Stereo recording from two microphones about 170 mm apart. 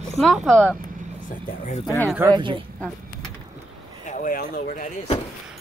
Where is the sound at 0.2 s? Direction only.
Centre (ahead or behind).